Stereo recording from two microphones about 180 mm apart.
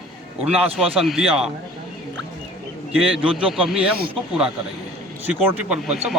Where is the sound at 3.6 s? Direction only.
5° right (ahead or behind).